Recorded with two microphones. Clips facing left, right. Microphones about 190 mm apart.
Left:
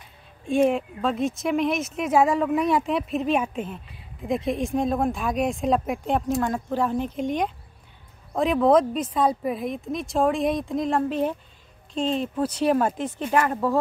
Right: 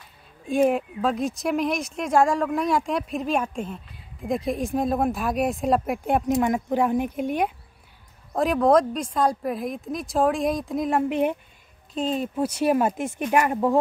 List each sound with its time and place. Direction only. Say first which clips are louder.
0.5 s speech: even; centre (ahead or behind)
11.1 s speech: right 2 dB; 15° right (ahead or behind)
11.9 s speech: left 1 dB; 5° right (ahead or behind)